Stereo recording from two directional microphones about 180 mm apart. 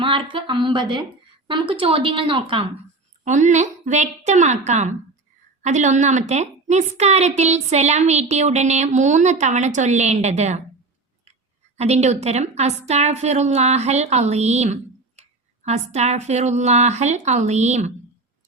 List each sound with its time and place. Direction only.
0.0 s speech: 30° right (ahead or behind)
3.2 s a woman's voice: 40° right (ahead or behind)
11.8 s a woman's voice: 35° right (ahead or behind)